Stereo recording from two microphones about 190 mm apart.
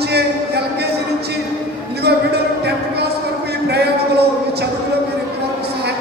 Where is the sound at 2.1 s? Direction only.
60° right (ahead or behind).